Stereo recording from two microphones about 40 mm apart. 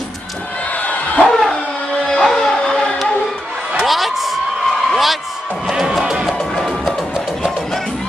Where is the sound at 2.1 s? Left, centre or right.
Centre.